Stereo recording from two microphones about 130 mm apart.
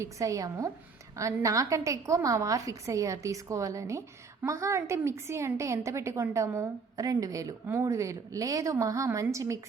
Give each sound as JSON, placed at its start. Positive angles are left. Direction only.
{"t": 0.0, "sound": "a woman's voice", "side_deg": -25}